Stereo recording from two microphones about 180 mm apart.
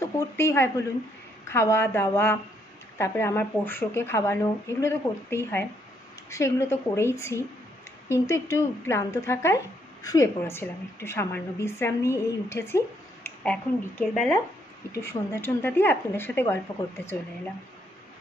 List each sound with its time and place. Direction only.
0.2 s a woman's voice: 15° left (ahead or behind)